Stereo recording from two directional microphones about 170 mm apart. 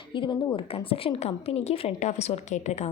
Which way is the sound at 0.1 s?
30° left (ahead or behind).